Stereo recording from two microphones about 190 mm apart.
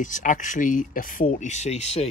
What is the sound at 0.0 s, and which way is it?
Speech, 40° left (ahead or behind).